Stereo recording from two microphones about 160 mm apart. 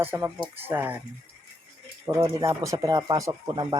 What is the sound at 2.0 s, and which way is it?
Speech, 20° right (ahead or behind).